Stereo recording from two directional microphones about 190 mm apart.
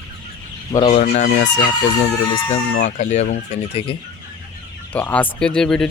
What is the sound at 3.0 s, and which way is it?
Speech, 40° left (ahead or behind).